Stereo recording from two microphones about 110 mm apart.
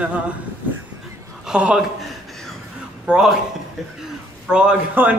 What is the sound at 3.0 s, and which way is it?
Speech, 5° right (ahead or behind).